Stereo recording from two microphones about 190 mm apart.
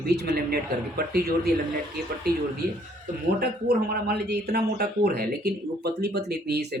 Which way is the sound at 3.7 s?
60° right (ahead or behind).